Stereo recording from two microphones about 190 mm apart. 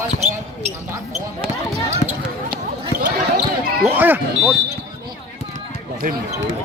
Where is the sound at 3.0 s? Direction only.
45° right (ahead or behind).